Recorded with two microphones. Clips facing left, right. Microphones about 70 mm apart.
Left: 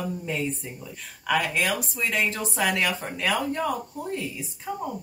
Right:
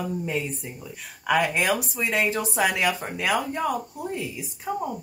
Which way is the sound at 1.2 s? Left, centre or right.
Right.